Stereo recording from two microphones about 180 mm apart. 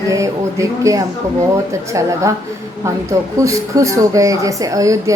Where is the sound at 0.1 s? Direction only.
15° right (ahead or behind).